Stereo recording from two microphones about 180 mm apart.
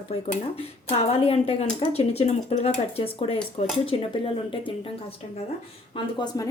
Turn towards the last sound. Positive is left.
turn(degrees=25)  # may be behind; listen again after turning